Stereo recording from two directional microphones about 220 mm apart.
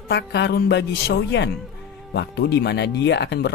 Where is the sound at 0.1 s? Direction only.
50° left (ahead or behind).